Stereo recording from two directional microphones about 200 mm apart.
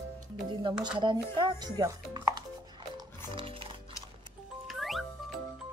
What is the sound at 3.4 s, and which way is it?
Music, 25° right (ahead or behind).